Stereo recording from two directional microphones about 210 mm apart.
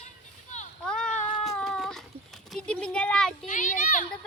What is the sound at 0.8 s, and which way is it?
Cat, 5° left (ahead or behind).